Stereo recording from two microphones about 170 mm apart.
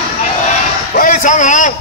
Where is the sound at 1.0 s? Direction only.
50° left (ahead or behind).